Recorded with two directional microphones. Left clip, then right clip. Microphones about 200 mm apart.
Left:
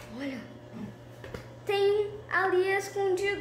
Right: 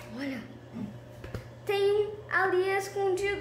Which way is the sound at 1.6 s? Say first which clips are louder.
Even; 5° right (ahead or behind).